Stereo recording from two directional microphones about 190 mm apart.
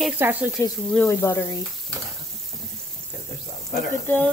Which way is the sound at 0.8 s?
Centre (ahead or behind).